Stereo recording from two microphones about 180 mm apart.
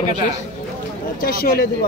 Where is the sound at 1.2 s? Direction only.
55° left (ahead or behind).